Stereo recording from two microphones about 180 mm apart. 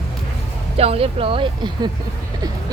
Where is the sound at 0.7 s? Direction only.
35° right (ahead or behind).